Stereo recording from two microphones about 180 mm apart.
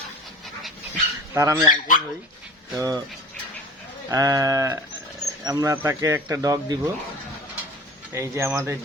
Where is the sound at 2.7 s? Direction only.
20° right (ahead or behind).